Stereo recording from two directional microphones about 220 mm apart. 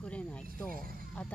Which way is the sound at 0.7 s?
40° right (ahead or behind).